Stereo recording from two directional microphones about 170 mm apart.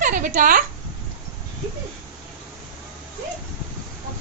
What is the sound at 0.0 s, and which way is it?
Speech, 50° right (ahead or behind).